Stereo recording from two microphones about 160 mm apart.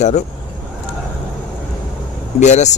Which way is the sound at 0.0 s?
45° left (ahead or behind).